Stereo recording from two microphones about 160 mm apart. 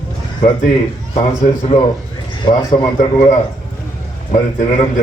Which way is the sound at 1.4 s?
40° left (ahead or behind).